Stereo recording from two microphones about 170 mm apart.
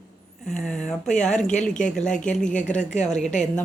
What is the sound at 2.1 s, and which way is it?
Speech, 45° left (ahead or behind).